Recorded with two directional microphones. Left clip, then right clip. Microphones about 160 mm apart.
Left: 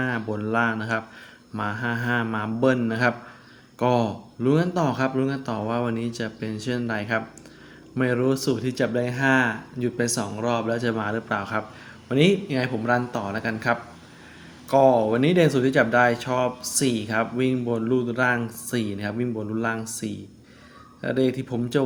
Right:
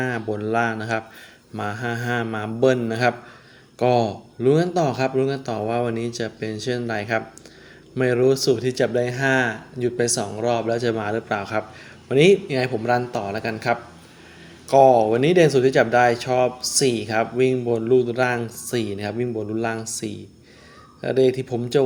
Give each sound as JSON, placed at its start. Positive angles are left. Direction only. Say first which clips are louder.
{"t": 0.0, "sound": "speech", "louder": "right 2 dB", "side_deg": -30}